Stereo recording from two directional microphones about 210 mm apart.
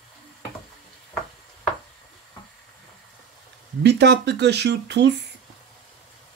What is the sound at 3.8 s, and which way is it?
Speech, 55° right (ahead or behind).